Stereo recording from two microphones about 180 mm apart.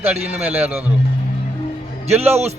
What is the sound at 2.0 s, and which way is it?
Speech, 35° right (ahead or behind).